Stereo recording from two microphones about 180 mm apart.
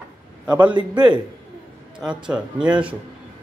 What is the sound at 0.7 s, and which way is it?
Speech, 25° right (ahead or behind).